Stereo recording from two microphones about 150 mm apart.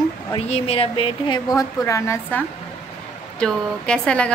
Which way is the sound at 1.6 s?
20° left (ahead or behind).